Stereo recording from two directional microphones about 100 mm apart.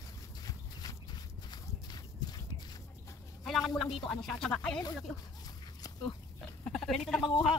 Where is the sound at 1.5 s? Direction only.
45° left (ahead or behind).